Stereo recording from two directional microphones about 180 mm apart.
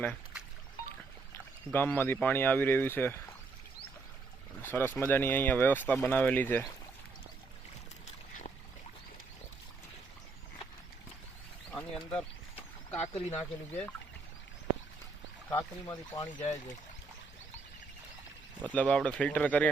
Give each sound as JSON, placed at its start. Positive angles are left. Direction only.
{"t": 1.7, "sound": "speech", "side_deg": 10}
{"t": 4.6, "sound": "speech", "side_deg": 10}
{"t": 11.7, "sound": "bird", "side_deg": 5}
{"t": 13.0, "sound": "speech", "side_deg": 35}
{"t": 13.3, "sound": "speech", "side_deg": 10}
{"t": 15.4, "sound": "speech", "side_deg": 20}
{"t": 18.7, "sound": "speech", "side_deg": 5}